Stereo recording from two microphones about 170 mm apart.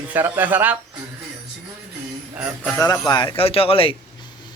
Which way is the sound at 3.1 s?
30° left (ahead or behind).